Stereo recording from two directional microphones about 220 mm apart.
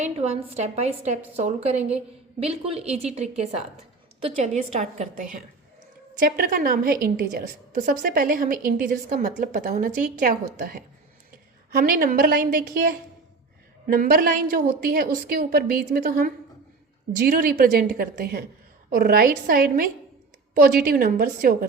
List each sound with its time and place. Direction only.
0.0 s a woman's voice: 30° right (ahead or behind)